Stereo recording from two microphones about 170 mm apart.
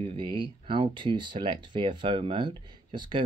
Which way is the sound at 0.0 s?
30° right (ahead or behind).